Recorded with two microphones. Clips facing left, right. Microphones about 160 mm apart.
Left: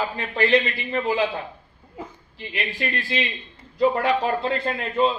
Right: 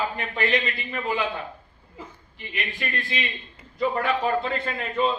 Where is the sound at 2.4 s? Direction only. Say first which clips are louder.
Left 4 dB; 30° left (ahead or behind).